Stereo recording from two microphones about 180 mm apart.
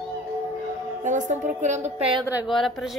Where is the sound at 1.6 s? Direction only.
40° right (ahead or behind).